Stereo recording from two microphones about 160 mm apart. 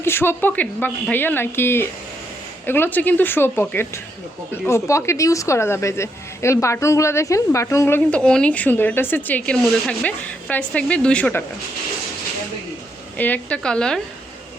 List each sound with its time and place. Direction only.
0.0 s a woman's voice: 15° left (ahead or behind)
13.1 s a woman's voice: 10° left (ahead or behind)